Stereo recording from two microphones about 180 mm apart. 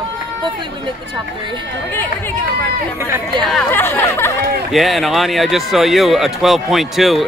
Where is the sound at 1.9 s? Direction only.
10° left (ahead or behind).